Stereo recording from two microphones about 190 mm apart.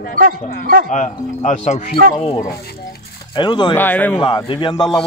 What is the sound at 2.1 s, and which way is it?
Speech, 25° left (ahead or behind).